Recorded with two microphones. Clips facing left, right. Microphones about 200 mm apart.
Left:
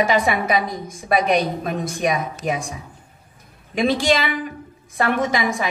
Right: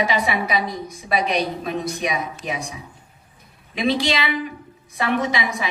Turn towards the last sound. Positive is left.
turn(degrees=50)  # may be behind; listen again after turning